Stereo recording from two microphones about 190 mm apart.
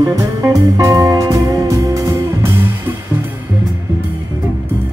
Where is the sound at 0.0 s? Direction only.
15° right (ahead or behind).